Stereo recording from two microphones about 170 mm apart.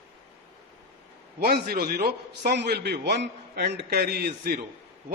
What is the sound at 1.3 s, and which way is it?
A man's voice, 65° right (ahead or behind).